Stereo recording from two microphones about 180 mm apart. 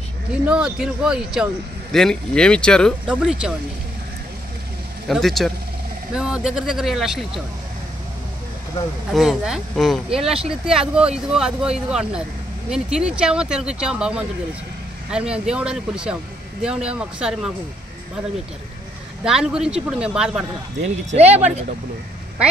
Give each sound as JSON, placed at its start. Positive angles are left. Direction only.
{"t": 0.3, "sound": "speech", "side_deg": -5}
{"t": 5.0, "sound": "speech", "side_deg": 0}
{"t": 9.1, "sound": "speech", "side_deg": 0}
{"t": 19.2, "sound": "speech", "side_deg": -5}
{"t": 21.1, "sound": "speech", "side_deg": -35}